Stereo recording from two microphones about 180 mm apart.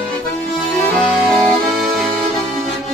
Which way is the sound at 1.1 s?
Centre (ahead or behind).